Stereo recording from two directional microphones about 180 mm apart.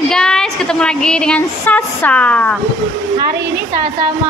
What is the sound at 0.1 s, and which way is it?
Speech, 5° left (ahead or behind).